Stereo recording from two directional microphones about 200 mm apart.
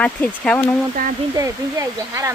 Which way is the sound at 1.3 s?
15° right (ahead or behind).